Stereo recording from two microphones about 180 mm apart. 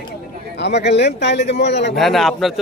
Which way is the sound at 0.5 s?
70° left (ahead or behind).